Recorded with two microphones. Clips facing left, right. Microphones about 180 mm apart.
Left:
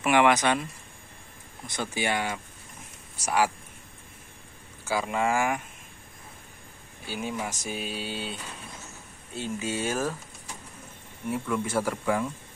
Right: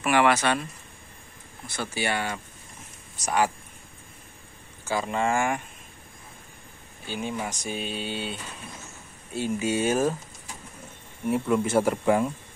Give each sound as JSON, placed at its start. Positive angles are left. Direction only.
{"t": 0.0, "sound": "speech", "side_deg": 15}
{"t": 1.7, "sound": "speech", "side_deg": 15}
{"t": 4.8, "sound": "speech", "side_deg": 5}
{"t": 7.1, "sound": "speech", "side_deg": 5}
{"t": 9.3, "sound": "speech", "side_deg": -10}
{"t": 11.2, "sound": "speech", "side_deg": -25}